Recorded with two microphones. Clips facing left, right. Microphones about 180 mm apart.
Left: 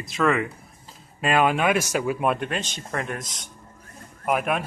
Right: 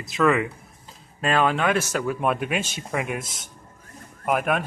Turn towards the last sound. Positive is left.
turn(degrees=0)  # may be behind; listen again after turning